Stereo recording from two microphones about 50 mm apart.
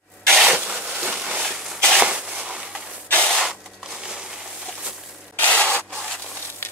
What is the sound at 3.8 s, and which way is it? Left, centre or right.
Crushing, centre.